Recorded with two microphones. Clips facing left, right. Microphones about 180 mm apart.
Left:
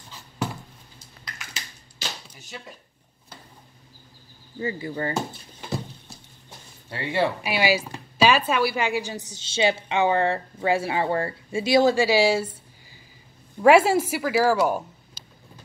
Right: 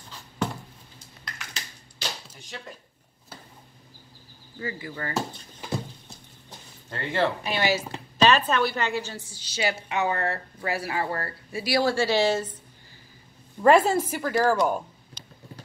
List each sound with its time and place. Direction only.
1.2 s a sound: 5° left (ahead or behind)
4.6 s a woman's voice: 25° left (ahead or behind)
5.1 s speech: centre (ahead or behind)
6.9 s a woman's voice: 10° left (ahead or behind)
13.6 s speech: 5° left (ahead or behind)